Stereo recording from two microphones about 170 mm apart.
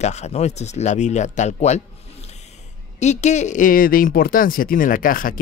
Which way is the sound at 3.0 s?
45° left (ahead or behind).